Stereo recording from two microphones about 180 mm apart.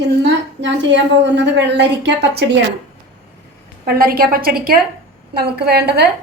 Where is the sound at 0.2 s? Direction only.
75° right (ahead or behind).